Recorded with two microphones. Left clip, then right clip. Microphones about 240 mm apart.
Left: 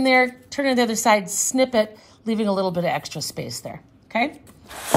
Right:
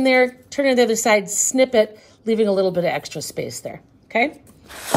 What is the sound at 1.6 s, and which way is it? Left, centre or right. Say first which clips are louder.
A woman's voice: right 4 dB; left.